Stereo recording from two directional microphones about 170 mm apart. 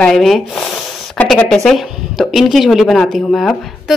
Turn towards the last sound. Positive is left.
turn(degrees=0)  # may be behind; listen again after turning